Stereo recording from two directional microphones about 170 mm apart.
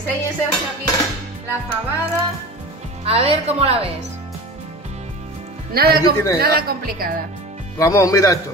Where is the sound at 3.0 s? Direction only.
35° right (ahead or behind).